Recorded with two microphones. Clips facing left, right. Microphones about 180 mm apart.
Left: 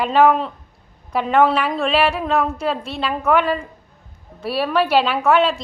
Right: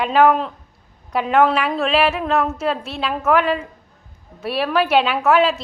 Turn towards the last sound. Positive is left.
turn(degrees=0)  # may be behind; listen again after turning